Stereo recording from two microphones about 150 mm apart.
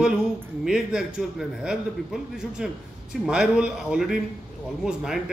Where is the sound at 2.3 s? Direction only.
5° right (ahead or behind).